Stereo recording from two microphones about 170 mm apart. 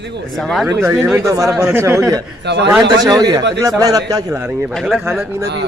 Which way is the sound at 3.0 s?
25° right (ahead or behind).